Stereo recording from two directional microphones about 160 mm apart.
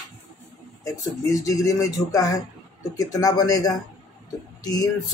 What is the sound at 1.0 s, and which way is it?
Speech, 20° left (ahead or behind).